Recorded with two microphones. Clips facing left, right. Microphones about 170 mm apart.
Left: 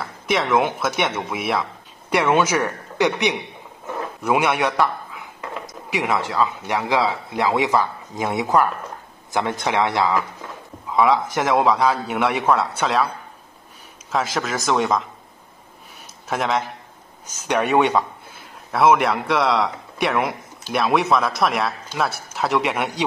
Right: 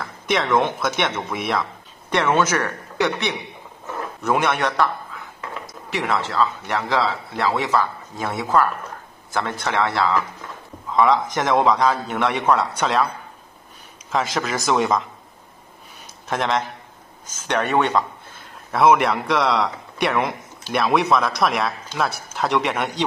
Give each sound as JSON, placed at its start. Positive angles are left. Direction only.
{"t": 0.0, "sound": "speech", "side_deg": 5}
{"t": 14.1, "sound": "speech", "side_deg": 0}
{"t": 16.3, "sound": "speech", "side_deg": 5}
{"t": 18.7, "sound": "speech", "side_deg": 0}